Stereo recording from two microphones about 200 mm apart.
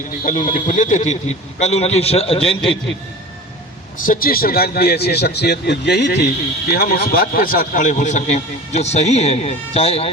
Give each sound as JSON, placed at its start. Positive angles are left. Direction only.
{"t": 0.3, "sound": "a man's voice", "side_deg": 40}
{"t": 4.0, "sound": "a man's voice", "side_deg": 45}